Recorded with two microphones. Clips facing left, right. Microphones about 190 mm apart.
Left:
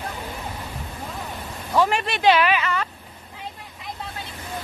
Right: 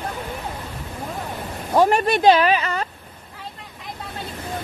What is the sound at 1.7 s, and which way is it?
Speech, 40° right (ahead or behind).